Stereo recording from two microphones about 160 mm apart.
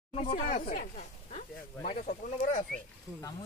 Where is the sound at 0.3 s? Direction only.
60° left (ahead or behind).